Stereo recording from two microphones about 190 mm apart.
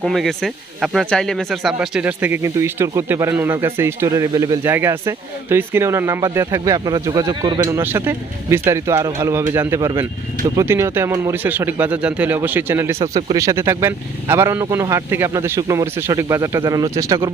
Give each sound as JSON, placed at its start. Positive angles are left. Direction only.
{"t": 0.0, "sound": "speech", "side_deg": 0}
{"t": 7.7, "sound": "speech", "side_deg": -10}